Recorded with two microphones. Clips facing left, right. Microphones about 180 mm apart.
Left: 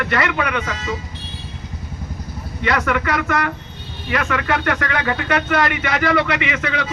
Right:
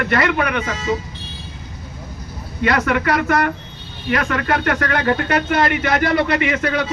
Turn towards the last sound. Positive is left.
turn(degrees=-45)  # may be behind; listen again after turning